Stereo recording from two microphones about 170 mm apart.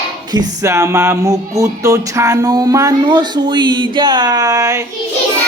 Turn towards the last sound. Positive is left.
turn(degrees=-20)  # may be behind; listen again after turning